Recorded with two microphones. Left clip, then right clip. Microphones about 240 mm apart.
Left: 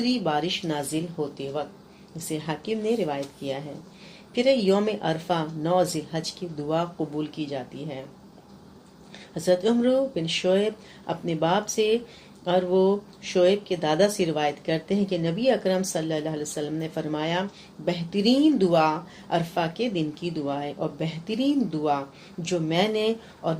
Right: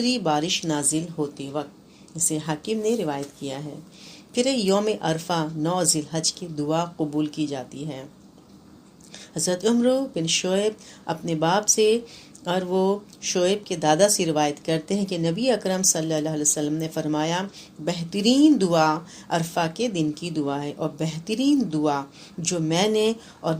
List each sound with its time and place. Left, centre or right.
0.0 s speech: right
9.1 s speech: right